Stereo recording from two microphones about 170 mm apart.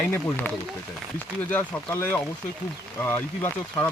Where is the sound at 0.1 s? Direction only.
10° left (ahead or behind).